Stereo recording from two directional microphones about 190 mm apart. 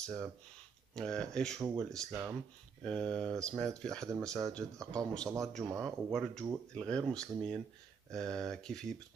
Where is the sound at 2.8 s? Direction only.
5° left (ahead or behind).